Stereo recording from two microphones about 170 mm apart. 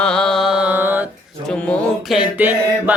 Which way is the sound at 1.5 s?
5° left (ahead or behind).